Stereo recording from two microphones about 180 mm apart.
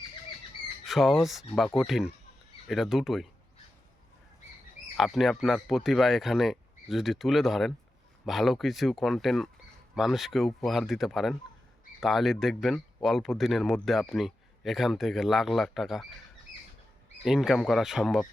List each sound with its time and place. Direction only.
0.9 s speech: centre (ahead or behind)
4.9 s speech: centre (ahead or behind)
17.2 s speech: 5° right (ahead or behind)